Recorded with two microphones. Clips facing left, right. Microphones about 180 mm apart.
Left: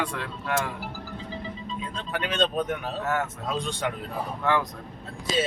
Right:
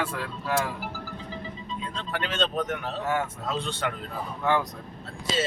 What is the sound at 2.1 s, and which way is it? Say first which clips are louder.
Speech: left 2 dB; 15° left (ahead or behind).